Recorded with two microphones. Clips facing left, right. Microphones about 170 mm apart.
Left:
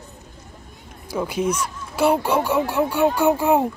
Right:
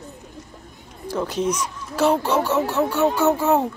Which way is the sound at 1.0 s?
10° left (ahead or behind).